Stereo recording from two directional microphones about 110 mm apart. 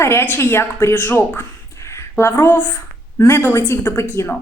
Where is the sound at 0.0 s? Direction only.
25° left (ahead or behind).